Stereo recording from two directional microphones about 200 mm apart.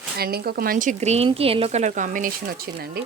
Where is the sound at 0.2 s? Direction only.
50° right (ahead or behind).